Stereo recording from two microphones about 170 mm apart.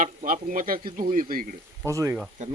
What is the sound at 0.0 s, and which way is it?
A man's voice, 50° right (ahead or behind).